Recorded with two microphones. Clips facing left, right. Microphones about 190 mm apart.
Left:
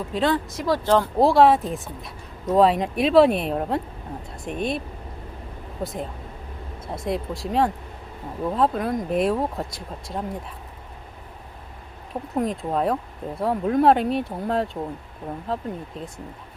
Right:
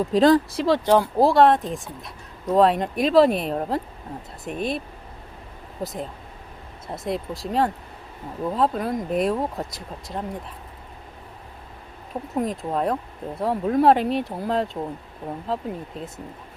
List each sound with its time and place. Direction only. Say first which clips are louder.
0.1 s speech: right 6 dB; 40° right (ahead or behind)
1.2 s speech: left 2 dB; centre (ahead or behind)
5.8 s speech: even; centre (ahead or behind)
12.3 s speech: left 1 dB; centre (ahead or behind)